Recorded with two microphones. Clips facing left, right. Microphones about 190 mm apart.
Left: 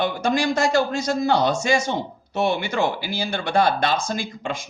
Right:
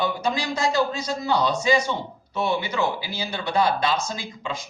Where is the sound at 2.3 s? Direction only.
85° left.